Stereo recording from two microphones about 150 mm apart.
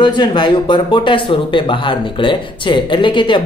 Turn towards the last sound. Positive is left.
turn(degrees=35)  # may be behind; listen again after turning